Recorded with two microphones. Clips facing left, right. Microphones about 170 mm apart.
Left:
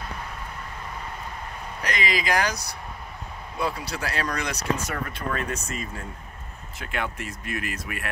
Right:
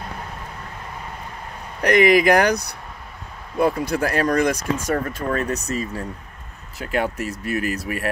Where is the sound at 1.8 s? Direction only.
60° right (ahead or behind).